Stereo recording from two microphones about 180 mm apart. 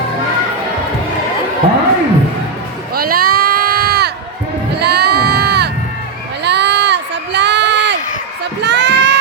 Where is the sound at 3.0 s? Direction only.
55° right (ahead or behind).